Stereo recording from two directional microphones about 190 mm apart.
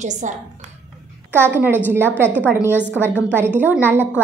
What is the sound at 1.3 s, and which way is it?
A woman's voice, 10° right (ahead or behind).